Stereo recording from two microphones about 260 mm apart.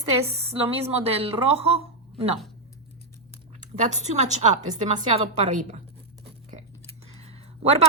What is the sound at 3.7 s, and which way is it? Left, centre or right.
A woman's voice, right.